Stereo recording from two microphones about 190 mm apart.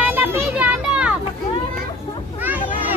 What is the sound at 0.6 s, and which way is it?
Children playing, 5° right (ahead or behind).